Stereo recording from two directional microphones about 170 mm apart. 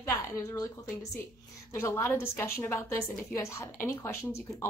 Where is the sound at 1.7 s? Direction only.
15° left (ahead or behind).